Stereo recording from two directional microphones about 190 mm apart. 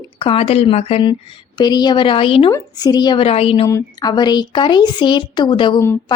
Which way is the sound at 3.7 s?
20° left (ahead or behind).